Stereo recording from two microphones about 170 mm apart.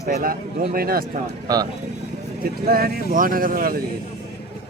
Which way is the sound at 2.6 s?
60° right (ahead or behind).